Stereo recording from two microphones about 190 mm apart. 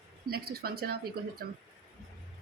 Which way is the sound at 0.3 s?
55° right (ahead or behind).